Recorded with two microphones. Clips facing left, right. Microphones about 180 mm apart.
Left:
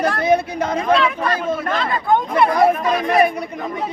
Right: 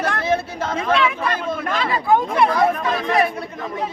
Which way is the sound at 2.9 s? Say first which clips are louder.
Left 3 dB; 20° left (ahead or behind).